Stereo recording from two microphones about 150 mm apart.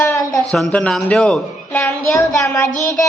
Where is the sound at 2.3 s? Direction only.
20° left (ahead or behind).